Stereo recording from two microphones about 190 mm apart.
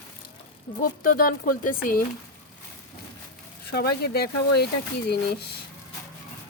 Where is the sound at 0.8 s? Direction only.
45° left (ahead or behind).